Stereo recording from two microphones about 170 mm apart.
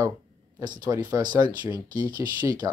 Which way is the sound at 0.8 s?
20° right (ahead or behind).